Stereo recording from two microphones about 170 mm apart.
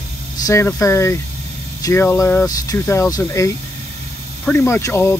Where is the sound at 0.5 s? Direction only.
15° left (ahead or behind).